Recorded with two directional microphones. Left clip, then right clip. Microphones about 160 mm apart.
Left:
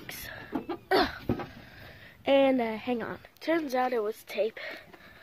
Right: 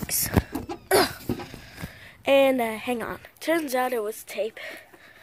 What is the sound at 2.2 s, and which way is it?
A woman's voice, 10° right (ahead or behind).